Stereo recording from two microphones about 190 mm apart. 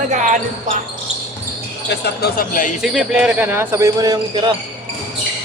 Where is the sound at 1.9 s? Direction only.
55° left (ahead or behind).